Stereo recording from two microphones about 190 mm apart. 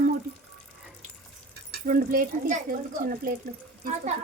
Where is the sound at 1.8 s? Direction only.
45° right (ahead or behind).